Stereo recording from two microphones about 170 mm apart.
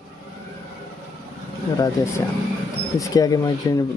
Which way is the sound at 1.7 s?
20° left (ahead or behind).